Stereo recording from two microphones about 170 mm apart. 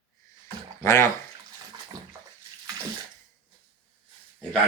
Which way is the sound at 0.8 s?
15° left (ahead or behind).